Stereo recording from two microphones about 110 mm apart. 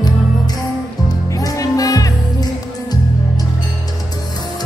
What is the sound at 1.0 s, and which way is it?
Music, 30° left (ahead or behind).